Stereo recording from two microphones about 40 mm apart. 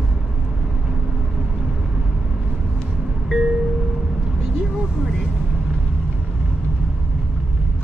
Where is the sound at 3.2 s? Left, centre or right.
Centre.